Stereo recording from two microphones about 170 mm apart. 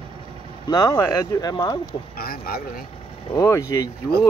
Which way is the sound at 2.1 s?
60° left (ahead or behind).